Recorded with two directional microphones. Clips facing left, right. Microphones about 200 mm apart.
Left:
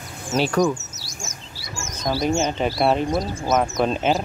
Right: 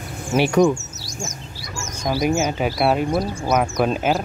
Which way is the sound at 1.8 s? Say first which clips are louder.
Right 2 dB; 15° right (ahead or behind).